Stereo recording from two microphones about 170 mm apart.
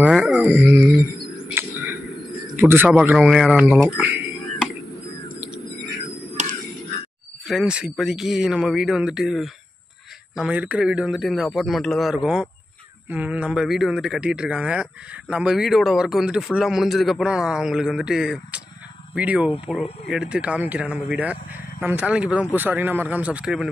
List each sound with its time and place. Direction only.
0.0 s wild animals: 10° right (ahead or behind)
0.5 s speech: 10° right (ahead or behind)
1.5 s a sound: 15° right (ahead or behind)
2.5 s speech: 10° right (ahead or behind)
6.4 s caw: 45° right (ahead or behind)
7.4 s speech: 5° right (ahead or behind)